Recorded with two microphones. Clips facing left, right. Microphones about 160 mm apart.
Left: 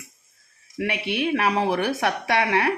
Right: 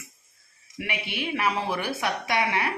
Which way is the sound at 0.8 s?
70° left (ahead or behind).